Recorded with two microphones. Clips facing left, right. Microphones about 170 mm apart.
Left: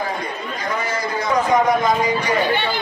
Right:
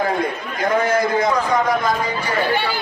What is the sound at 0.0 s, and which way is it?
A man's voice, 55° right (ahead or behind).